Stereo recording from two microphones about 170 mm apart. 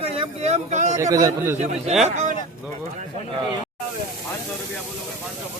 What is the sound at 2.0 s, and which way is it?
Speech, 45° right (ahead or behind).